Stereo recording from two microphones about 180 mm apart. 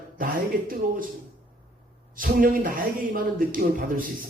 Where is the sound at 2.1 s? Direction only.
50° right (ahead or behind).